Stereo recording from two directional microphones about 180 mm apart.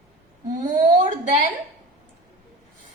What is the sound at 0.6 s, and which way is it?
Speech, 45° right (ahead or behind).